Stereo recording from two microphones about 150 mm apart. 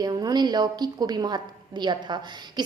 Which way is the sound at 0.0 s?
25° right (ahead or behind).